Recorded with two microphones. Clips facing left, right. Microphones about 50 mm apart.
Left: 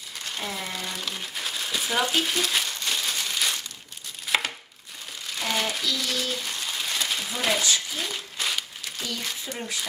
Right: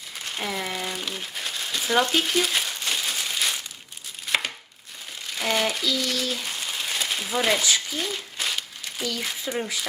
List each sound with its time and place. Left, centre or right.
0.3 s speech: centre
0.7 s crumpling: centre
4.3 s chopping: centre
5.4 s crumpling: centre
7.4 s a sound: centre